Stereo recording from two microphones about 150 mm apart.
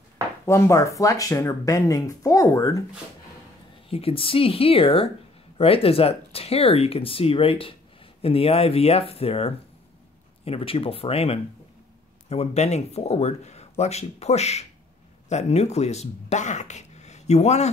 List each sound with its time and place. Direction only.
0.5 s speech: 20° left (ahead or behind)
3.9 s speech: 40° left (ahead or behind)